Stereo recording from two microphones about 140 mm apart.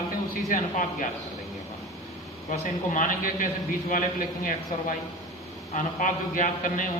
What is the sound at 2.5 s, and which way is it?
Speech, 70° left (ahead or behind).